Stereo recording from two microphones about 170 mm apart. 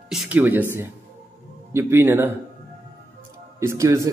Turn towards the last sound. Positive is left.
turn(degrees=-20)  # may be behind; listen again after turning